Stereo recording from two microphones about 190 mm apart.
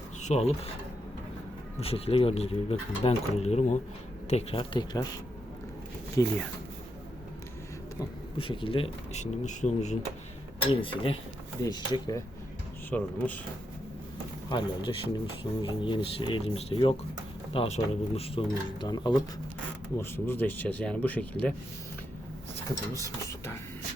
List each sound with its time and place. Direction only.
0.2 s a sound: 40° left (ahead or behind)
1.8 s speech: 30° left (ahead or behind)
6.2 s speech: 15° left (ahead or behind)
8.4 s speech: 25° left (ahead or behind)
10.7 s speech: 25° left (ahead or behind)
12.9 s speech: 10° left (ahead or behind)
14.5 s speech: 25° left (ahead or behind)
20.0 s speech: 10° left (ahead or behind)